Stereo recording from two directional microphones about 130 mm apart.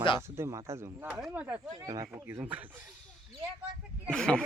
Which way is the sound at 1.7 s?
25° right (ahead or behind).